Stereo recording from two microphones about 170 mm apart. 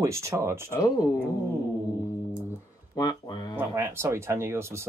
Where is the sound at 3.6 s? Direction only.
15° right (ahead or behind).